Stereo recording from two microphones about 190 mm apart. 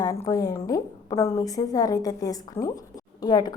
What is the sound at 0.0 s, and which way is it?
A woman's voice, 15° left (ahead or behind).